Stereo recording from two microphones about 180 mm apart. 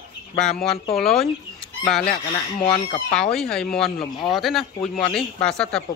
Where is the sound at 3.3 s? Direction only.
5° left (ahead or behind).